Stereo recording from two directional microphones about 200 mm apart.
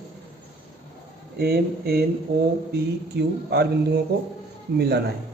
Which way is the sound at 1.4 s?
50° right (ahead or behind).